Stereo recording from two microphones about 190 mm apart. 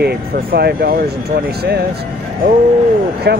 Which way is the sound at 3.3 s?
60° right (ahead or behind).